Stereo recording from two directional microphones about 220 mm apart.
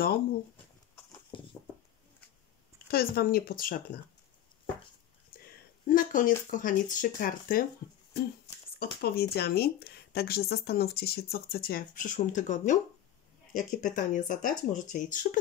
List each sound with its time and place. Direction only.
1.3 s patter: 20° left (ahead or behind)
2.9 s speech: 45° left (ahead or behind)
5.3 s a sound: 40° left (ahead or behind)
5.9 s speech: 40° left (ahead or behind)
8.7 s speech: 45° left (ahead or behind)